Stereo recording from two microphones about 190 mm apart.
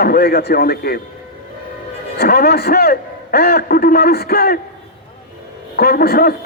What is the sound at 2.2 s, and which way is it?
A man's voice, 55° left (ahead or behind).